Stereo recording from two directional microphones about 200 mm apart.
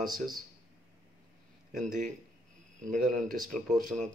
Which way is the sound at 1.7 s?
40° right (ahead or behind).